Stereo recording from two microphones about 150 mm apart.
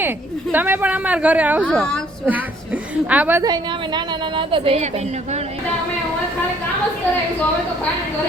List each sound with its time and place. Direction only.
0.5 s speech: 10° right (ahead or behind)
1.6 s a woman's voice: 5° left (ahead or behind)
3.1 s speech: 10° right (ahead or behind)
3.4 s a woman's voice: 30° right (ahead or behind)